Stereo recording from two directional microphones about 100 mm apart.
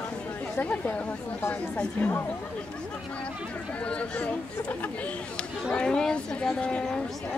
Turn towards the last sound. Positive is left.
turn(degrees=10)  # may be behind; listen again after turning